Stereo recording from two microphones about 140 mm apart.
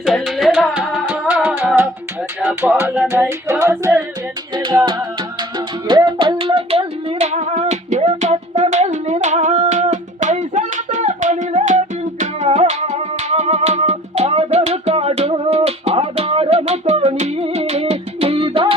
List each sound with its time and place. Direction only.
0.0 s music: centre (ahead or behind); by 3.9 s 20° right (ahead or behind)
4.5 s music: 30° right (ahead or behind)